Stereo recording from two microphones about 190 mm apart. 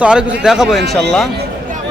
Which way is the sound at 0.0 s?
5° right (ahead or behind).